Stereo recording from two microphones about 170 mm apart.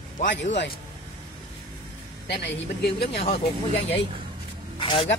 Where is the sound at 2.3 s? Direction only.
75° left (ahead or behind).